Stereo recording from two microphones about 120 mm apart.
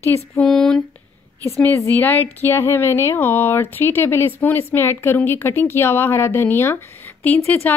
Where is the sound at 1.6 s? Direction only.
20° left (ahead or behind).